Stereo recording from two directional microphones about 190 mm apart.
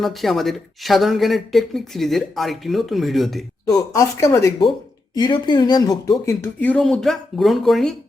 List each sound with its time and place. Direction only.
0.0 s speech: centre (ahead or behind)
3.7 s speech: 20° left (ahead or behind); by 7.9 s centre (ahead or behind)